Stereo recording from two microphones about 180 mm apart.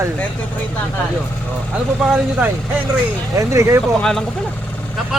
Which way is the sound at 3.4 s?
15° right (ahead or behind).